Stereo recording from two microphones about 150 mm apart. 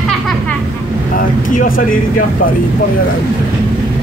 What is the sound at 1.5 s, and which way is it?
Speech, 60° left (ahead or behind).